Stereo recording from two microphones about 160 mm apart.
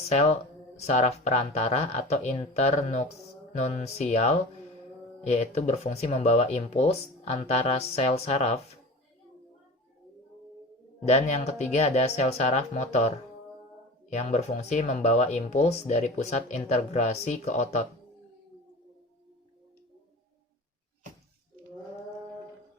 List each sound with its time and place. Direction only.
0.1 s speech: 40° left (ahead or behind)
11.0 s speech: 45° left (ahead or behind)